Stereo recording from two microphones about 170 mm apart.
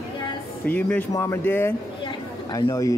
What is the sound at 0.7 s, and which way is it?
Speech, 10° left (ahead or behind).